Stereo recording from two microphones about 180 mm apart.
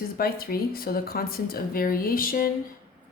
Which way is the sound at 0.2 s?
55° left (ahead or behind).